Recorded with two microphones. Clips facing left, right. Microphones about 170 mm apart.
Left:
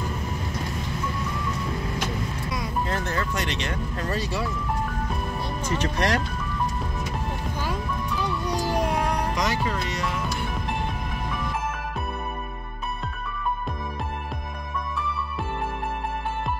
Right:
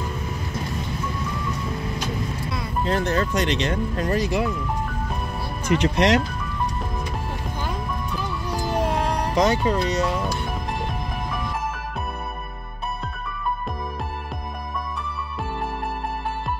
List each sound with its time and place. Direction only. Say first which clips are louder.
2.8 s speech: right 7 dB; 20° right (ahead or behind)
5.7 s speech: right 7 dB; 15° right (ahead or behind)
9.3 s speech: right 6 dB; 30° right (ahead or behind)